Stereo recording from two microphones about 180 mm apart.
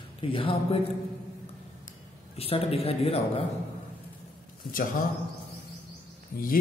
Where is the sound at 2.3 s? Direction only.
30° left (ahead or behind).